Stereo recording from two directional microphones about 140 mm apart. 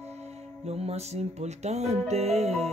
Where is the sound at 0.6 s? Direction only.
50° right (ahead or behind).